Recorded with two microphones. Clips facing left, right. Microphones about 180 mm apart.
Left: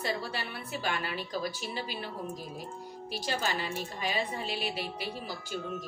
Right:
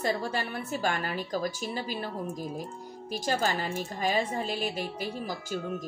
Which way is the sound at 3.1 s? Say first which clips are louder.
Right 4 dB; 45° right (ahead or behind).